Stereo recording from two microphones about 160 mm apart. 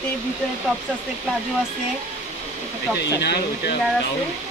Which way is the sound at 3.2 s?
90° left.